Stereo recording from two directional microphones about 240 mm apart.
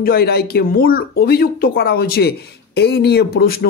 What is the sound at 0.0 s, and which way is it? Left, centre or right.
Speech, left.